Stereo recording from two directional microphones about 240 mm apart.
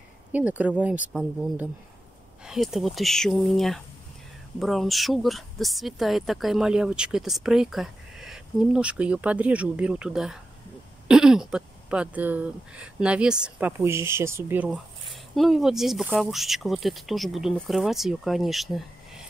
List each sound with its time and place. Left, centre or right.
0.3 s speech: centre